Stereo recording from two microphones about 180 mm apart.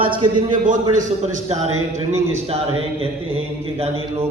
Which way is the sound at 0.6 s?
45° right (ahead or behind).